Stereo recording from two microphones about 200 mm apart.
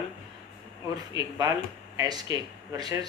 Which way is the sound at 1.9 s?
20° right (ahead or behind).